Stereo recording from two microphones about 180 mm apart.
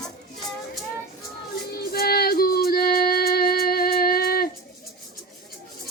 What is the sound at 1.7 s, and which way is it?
Music, 55° left (ahead or behind).